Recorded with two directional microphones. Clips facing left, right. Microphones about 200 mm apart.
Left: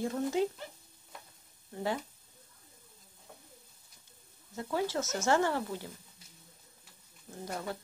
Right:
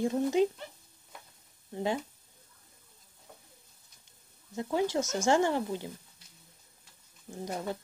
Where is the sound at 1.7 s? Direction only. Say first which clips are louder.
Right 3 dB; 20° right (ahead or behind).